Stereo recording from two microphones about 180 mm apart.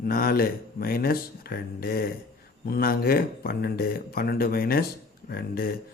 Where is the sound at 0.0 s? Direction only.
55° left (ahead or behind).